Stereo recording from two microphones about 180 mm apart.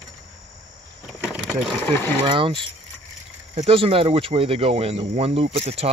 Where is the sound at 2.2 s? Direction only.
30° right (ahead or behind).